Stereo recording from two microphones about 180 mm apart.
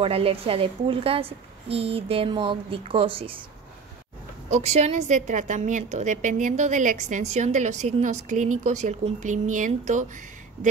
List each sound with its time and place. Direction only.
0.0 s a woman's voice: 30° right (ahead or behind)
4.5 s a woman's voice: 40° right (ahead or behind)